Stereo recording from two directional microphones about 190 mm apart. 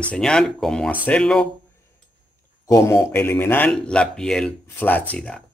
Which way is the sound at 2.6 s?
15° left (ahead or behind).